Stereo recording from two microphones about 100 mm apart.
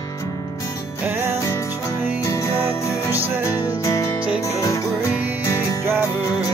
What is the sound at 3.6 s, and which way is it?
Music, 30° left (ahead or behind).